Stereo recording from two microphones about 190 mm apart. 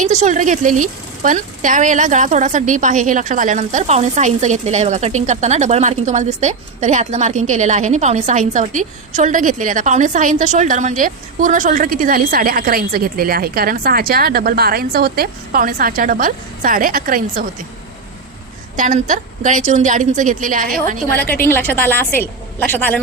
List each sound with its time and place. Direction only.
0.0 s speech: 40° right (ahead or behind)
18.8 s a woman's voice: 45° right (ahead or behind)
21.4 s a woman's voice: 10° left (ahead or behind)